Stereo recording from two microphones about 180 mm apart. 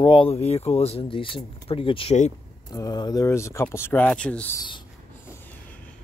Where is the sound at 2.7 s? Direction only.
20° left (ahead or behind).